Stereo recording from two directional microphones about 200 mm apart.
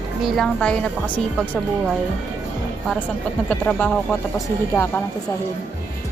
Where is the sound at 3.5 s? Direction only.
10° left (ahead or behind).